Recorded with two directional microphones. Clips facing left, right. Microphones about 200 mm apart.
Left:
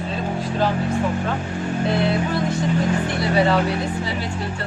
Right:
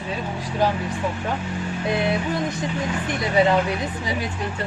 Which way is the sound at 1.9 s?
15° right (ahead or behind).